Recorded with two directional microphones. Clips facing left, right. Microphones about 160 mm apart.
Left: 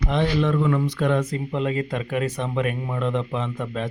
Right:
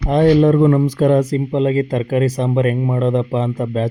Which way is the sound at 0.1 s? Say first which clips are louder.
Right 11 dB; 45° right (ahead or behind).